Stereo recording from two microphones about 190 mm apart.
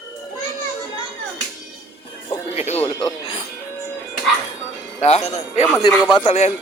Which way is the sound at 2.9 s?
20° left (ahead or behind).